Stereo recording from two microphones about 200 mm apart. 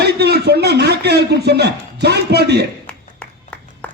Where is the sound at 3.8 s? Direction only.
5° left (ahead or behind).